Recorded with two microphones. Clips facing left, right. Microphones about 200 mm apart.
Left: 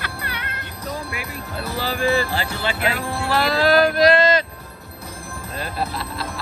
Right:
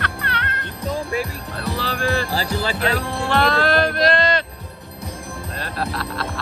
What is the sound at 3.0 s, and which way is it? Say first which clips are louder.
Music: right 2 dB; 5° left (ahead or behind).